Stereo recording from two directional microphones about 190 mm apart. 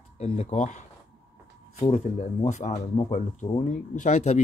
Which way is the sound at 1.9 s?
35° left (ahead or behind).